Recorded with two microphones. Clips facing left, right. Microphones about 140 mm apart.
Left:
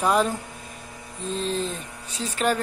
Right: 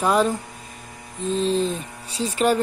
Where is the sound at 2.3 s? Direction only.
5° right (ahead or behind).